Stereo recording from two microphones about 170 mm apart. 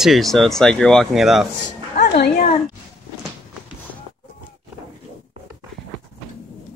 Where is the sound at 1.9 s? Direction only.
70° left (ahead or behind).